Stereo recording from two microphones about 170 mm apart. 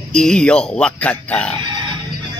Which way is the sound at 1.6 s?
25° right (ahead or behind).